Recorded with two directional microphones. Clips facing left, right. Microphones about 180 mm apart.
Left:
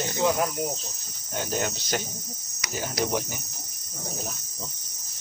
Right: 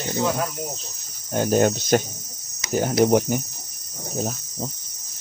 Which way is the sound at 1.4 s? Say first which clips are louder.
Right 10 dB; 50° right (ahead or behind).